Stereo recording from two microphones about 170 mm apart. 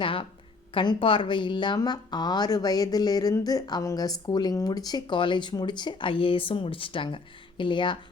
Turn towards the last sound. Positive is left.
turn(degrees=30)  # may be behind; listen again after turning